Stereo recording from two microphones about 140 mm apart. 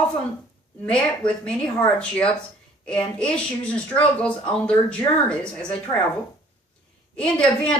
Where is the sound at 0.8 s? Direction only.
5° left (ahead or behind).